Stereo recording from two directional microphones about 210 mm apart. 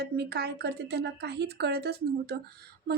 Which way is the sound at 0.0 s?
50° right (ahead or behind).